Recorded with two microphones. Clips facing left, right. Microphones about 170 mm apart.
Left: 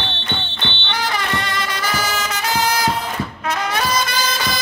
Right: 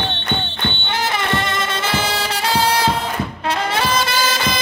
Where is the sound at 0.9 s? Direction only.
25° right (ahead or behind).